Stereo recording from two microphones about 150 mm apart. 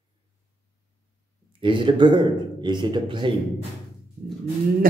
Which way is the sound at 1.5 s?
35° right (ahead or behind).